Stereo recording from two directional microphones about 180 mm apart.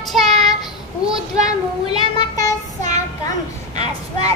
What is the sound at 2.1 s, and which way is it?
Child singing, 20° left (ahead or behind).